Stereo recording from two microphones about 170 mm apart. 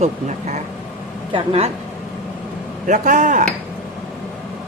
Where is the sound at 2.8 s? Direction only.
45° right (ahead or behind).